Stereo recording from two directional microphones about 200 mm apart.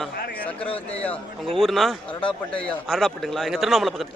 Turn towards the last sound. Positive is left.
turn(degrees=0)  # may be behind; listen again after turning